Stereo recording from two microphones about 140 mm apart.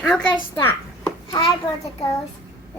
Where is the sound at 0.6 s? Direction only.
15° left (ahead or behind).